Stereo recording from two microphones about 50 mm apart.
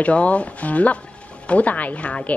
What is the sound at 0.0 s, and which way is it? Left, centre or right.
A woman's voice, left.